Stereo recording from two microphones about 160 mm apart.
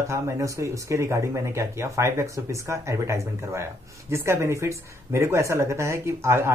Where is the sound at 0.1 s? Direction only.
20° right (ahead or behind).